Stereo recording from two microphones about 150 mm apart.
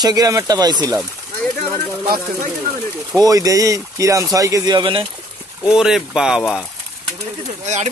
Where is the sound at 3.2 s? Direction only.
25° right (ahead or behind).